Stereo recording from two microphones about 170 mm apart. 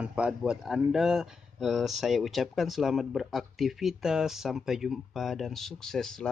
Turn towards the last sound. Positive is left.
turn(degrees=5)  # may be behind; listen again after turning